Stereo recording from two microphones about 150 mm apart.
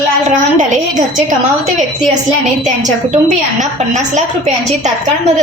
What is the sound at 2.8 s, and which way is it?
Speech, 55° right (ahead or behind).